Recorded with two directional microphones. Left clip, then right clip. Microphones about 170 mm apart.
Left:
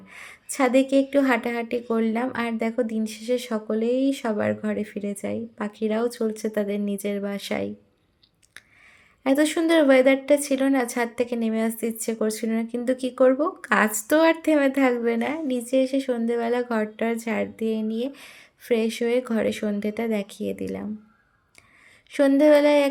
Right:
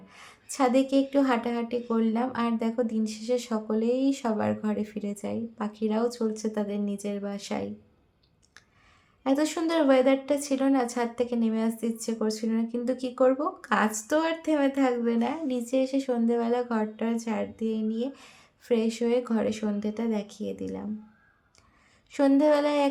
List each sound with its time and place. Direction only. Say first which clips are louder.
0.1 s a woman's voice: left 5 dB; 15° left (ahead or behind)
9.2 s a woman's voice: left 5 dB; 15° left (ahead or behind)
22.1 s a woman's voice: left 5 dB; 10° left (ahead or behind)